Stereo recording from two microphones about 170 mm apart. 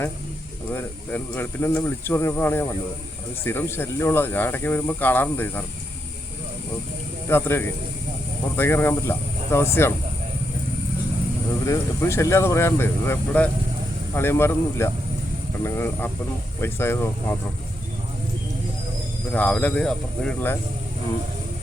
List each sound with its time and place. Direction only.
0.7 s speech: 10° left (ahead or behind)
7.3 s speech: 15° left (ahead or behind)
11.6 s speech: 15° left (ahead or behind)
19.3 s speech: 10° left (ahead or behind)